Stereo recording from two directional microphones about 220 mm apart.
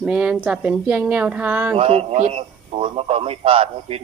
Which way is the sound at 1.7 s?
25° right (ahead or behind).